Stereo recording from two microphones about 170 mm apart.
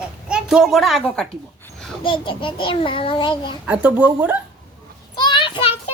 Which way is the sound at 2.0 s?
30° left (ahead or behind).